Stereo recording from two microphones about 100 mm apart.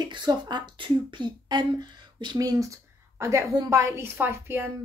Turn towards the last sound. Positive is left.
turn(degrees=-20)  # may be behind; listen again after turning